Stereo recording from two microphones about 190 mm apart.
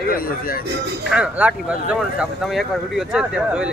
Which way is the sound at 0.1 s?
50° left (ahead or behind).